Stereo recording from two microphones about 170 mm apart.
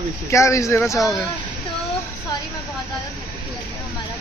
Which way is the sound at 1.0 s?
Centre (ahead or behind).